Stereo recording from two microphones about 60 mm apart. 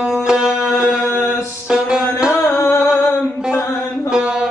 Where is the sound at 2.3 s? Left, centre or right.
Left.